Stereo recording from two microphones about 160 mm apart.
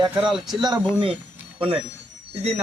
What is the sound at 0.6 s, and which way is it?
Speech, 30° right (ahead or behind).